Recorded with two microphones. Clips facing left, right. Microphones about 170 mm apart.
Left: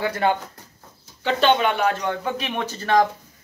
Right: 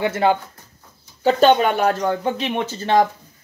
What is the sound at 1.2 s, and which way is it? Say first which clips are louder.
Speech: right 4 dB; 45° right (ahead or behind).